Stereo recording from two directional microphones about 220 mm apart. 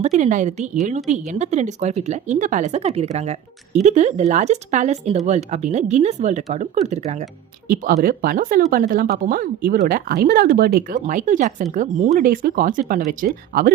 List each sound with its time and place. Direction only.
0.0 s speech: 35° right (ahead or behind)